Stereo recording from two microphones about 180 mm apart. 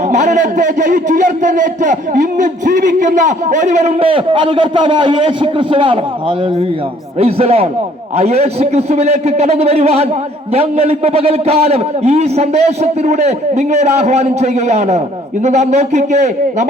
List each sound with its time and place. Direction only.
0.1 s a man's voice: 40° right (ahead or behind)